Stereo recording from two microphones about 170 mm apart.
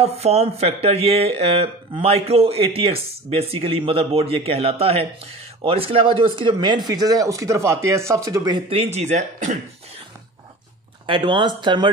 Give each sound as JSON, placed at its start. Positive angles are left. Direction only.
{"t": 0.0, "sound": "speech", "side_deg": -40}
{"t": 11.1, "sound": "speech", "side_deg": -30}